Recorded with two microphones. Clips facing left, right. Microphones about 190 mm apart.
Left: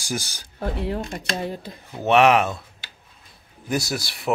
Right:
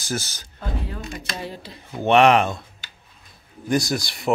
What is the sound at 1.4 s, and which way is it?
Speech, 50° left (ahead or behind).